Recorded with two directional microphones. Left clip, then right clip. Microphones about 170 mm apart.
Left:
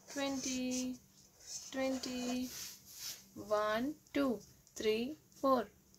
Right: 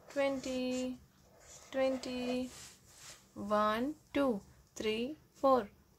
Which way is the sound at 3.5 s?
15° right (ahead or behind).